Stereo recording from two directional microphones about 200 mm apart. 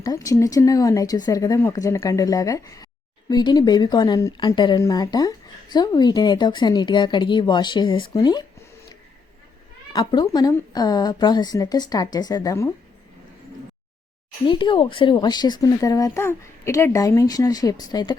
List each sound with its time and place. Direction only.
0.0 s speech: 15° left (ahead or behind)
9.9 s speech: 20° left (ahead or behind)
14.4 s speech: 25° left (ahead or behind)